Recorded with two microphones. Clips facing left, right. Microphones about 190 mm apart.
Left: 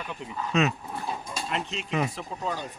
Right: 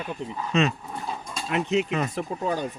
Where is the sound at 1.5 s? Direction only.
60° right (ahead or behind).